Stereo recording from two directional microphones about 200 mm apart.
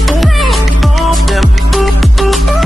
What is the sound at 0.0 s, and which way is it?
Music, centre (ahead or behind).